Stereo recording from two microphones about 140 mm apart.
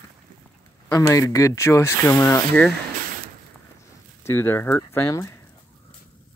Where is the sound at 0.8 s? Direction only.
20° left (ahead or behind).